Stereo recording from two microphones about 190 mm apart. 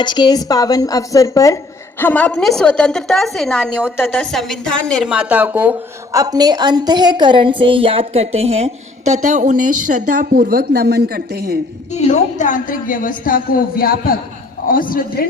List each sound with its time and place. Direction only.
0.0 s a woman's voice: 25° left (ahead or behind); by 5.7 s 10° right (ahead or behind)
6.1 s a woman's voice: 20° right (ahead or behind); by 11.6 s 55° right (ahead or behind)
12.0 s a woman's voice: 40° left (ahead or behind)